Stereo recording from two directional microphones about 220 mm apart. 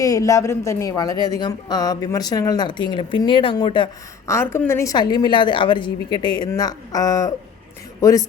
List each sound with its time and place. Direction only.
0.0 s speech: 15° left (ahead or behind)